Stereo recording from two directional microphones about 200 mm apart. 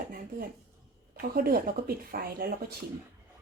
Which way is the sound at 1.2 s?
45° right (ahead or behind).